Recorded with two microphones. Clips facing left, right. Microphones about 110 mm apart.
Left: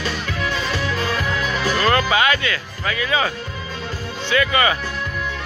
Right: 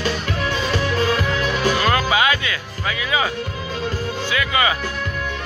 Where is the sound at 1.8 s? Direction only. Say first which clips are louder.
Left 4 dB; 15° right (ahead or behind).